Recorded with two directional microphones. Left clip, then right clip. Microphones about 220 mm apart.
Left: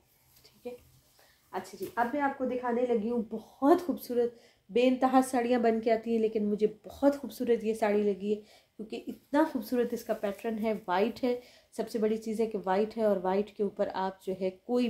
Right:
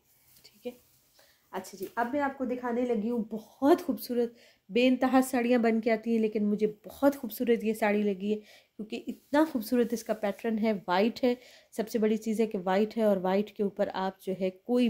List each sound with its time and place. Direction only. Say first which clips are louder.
1.5 s a woman's voice: even; 55° right (ahead or behind); by 14.9 s 40° right (ahead or behind)